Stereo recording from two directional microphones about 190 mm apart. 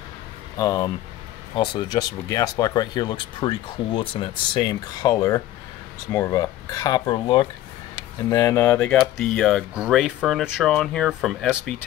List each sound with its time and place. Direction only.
0.6 s speech: 20° left (ahead or behind); by 11.7 s centre (ahead or behind)